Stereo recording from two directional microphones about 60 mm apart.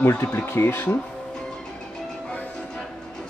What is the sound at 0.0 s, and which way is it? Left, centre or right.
Speech, left.